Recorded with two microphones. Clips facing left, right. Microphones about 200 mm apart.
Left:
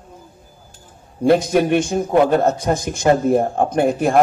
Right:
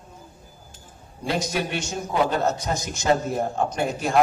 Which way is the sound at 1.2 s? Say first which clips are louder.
Left 12 dB; 55° left (ahead or behind).